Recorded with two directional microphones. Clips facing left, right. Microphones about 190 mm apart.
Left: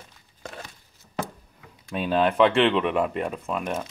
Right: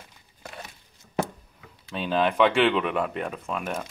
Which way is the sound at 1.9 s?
5° left (ahead or behind).